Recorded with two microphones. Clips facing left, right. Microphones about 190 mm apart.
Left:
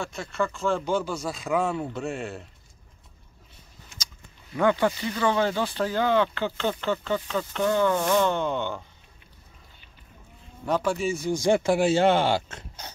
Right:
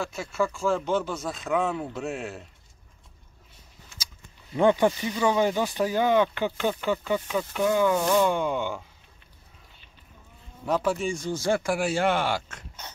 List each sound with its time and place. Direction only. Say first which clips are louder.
0.0 s speech: right 1 dB; 5° right (ahead or behind)
4.6 s speech: right 2 dB; 15° right (ahead or behind)
10.6 s speech: even; 5° right (ahead or behind); by 12.9 s 30° left (ahead or behind)